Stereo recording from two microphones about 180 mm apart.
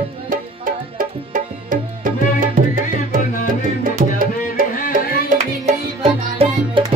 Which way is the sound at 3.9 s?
50° right (ahead or behind).